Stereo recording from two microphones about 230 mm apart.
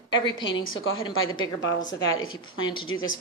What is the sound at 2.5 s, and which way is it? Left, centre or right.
Speech, left.